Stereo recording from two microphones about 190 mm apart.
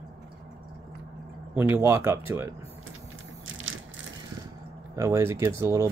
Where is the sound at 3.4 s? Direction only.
90° right.